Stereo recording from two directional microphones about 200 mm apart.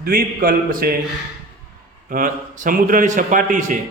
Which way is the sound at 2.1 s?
40° right (ahead or behind).